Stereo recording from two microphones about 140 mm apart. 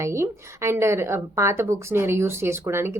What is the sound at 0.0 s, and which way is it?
A woman's voice, 20° right (ahead or behind).